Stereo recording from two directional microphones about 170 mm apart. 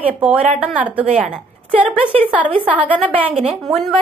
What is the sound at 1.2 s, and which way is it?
Speech, 35° right (ahead or behind).